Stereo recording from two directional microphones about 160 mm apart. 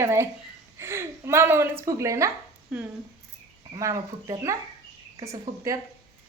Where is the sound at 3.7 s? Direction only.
20° right (ahead or behind).